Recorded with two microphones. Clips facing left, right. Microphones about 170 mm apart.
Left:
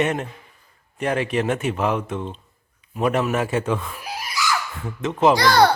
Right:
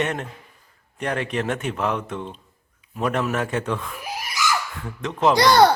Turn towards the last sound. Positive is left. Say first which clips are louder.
# right 2 dB
turn(degrees=-20)  # may be behind; listen again after turning